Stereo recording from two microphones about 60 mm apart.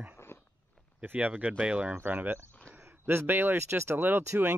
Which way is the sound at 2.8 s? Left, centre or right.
Right.